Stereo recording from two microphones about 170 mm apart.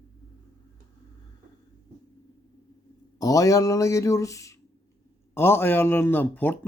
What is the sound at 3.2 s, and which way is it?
Speech, 20° left (ahead or behind).